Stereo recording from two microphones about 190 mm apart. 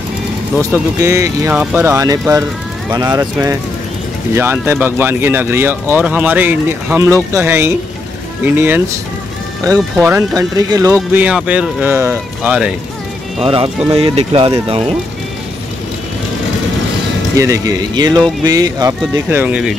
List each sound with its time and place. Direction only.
0.6 s speech: 15° right (ahead or behind)
4.4 s speech: 10° right (ahead or behind)
10.0 s speech: 15° right (ahead or behind)
11.2 s speech: 5° right (ahead or behind)
13.4 s speech: 25° right (ahead or behind)
17.4 s speech: 15° right (ahead or behind)